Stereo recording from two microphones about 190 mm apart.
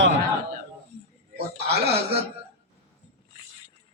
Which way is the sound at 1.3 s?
30° right (ahead or behind).